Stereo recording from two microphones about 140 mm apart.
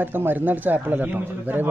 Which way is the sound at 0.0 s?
15° right (ahead or behind).